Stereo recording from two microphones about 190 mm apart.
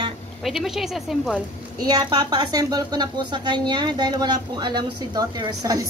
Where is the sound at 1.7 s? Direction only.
20° right (ahead or behind).